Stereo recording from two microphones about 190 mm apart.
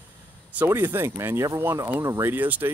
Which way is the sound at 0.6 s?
10° right (ahead or behind).